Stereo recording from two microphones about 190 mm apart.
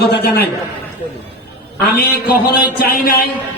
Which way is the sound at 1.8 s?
55° left (ahead or behind).